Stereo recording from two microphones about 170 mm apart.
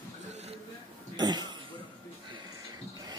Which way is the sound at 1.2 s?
25° right (ahead or behind).